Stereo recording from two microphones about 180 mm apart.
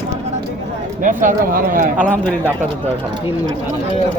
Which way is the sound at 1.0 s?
45° right (ahead or behind).